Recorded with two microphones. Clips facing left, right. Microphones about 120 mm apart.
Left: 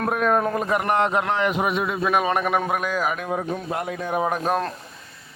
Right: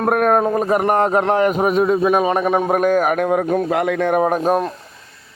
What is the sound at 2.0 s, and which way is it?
Speech, 25° right (ahead or behind).